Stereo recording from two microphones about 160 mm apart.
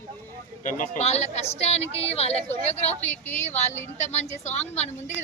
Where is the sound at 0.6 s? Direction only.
55° left (ahead or behind).